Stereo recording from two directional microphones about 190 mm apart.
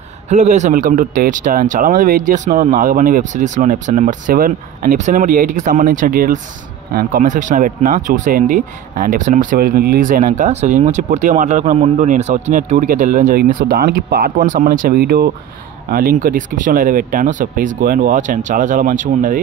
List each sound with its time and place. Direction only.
0.3 s speech: 40° right (ahead or behind)